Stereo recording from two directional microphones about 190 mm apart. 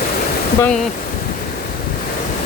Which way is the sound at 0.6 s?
5° left (ahead or behind).